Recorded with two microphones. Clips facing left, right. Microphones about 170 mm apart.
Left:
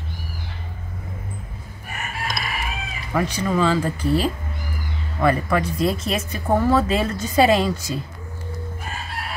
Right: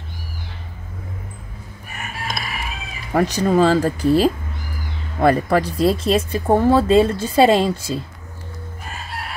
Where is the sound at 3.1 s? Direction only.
40° right (ahead or behind).